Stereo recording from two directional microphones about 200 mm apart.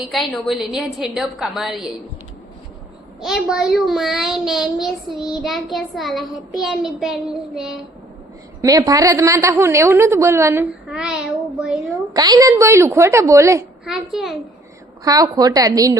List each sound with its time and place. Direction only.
0.0 s child singing: centre (ahead or behind)
3.2 s child singing: centre (ahead or behind)
8.6 s a woman's voice: 15° right (ahead or behind)
12.1 s a woman's voice: 20° right (ahead or behind)
13.8 s child singing: centre (ahead or behind)
15.0 s a woman's voice: 20° right (ahead or behind)